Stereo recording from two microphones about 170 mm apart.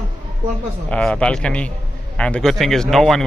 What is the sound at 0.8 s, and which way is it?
A man's voice, 5° left (ahead or behind).